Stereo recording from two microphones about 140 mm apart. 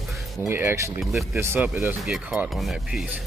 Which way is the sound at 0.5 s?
15° right (ahead or behind).